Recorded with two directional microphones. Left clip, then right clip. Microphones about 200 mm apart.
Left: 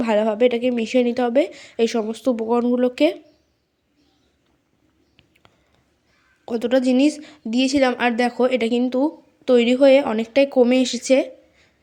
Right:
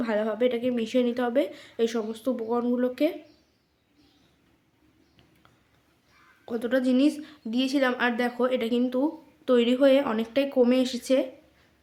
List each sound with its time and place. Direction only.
0.0 s a woman's voice: 30° left (ahead or behind)
6.4 s a woman's voice: 30° left (ahead or behind)